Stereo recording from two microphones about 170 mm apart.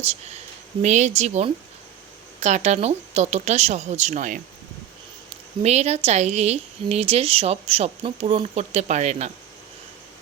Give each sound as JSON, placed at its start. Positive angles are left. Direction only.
{"t": 0.8, "sound": "speech", "side_deg": -45}
{"t": 5.6, "sound": "speech", "side_deg": -40}